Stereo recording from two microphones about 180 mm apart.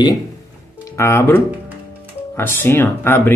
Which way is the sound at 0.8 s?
15° left (ahead or behind).